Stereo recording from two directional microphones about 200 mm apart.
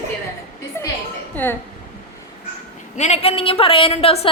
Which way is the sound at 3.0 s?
35° left (ahead or behind).